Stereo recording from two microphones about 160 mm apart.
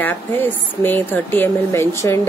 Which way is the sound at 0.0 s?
10° left (ahead or behind).